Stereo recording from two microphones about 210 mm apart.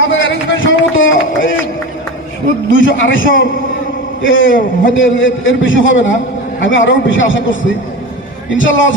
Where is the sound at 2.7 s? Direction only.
65° left (ahead or behind).